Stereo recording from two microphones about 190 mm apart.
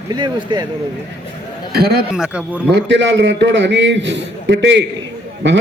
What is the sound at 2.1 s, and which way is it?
Speech, 5° right (ahead or behind).